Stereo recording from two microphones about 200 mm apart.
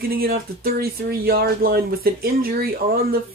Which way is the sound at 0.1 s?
50° right (ahead or behind).